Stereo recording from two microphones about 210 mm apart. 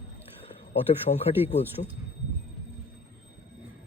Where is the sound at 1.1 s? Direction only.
30° left (ahead or behind).